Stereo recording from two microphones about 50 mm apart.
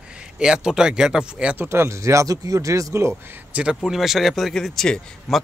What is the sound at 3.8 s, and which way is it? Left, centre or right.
A man's voice, centre.